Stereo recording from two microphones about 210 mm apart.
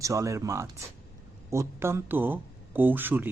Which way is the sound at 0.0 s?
15° right (ahead or behind).